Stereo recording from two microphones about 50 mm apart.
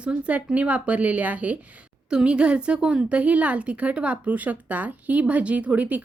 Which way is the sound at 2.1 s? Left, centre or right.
Centre.